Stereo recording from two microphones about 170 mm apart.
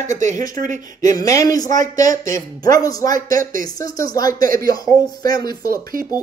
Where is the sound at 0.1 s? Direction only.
45° right (ahead or behind).